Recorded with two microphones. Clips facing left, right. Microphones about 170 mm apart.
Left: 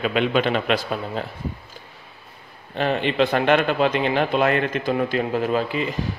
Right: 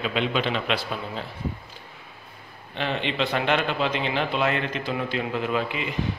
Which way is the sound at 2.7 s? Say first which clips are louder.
Left 6 dB; 45° left (ahead or behind).